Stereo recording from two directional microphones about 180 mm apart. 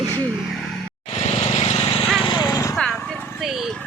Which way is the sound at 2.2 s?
25° left (ahead or behind).